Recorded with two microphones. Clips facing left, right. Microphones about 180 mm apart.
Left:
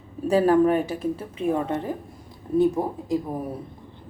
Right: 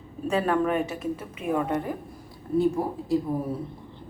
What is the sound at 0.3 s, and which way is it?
Speech, 35° left (ahead or behind).